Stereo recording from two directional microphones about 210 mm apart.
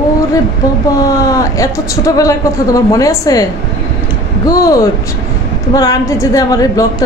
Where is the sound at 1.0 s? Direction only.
15° left (ahead or behind).